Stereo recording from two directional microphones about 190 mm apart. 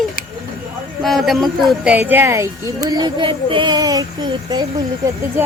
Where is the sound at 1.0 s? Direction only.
Centre (ahead or behind); by 4.6 s 20° right (ahead or behind).